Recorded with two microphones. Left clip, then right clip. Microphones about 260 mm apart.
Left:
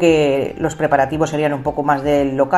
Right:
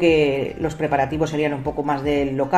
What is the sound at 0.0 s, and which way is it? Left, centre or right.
A woman's voice, left.